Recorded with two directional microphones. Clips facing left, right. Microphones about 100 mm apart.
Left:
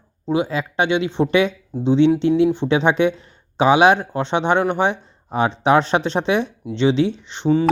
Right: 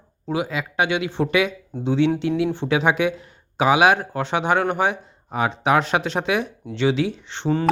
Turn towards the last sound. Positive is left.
turn(degrees=15)  # may be behind; listen again after turning